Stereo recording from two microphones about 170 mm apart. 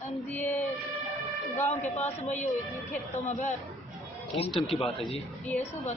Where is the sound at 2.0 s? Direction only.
40° left (ahead or behind).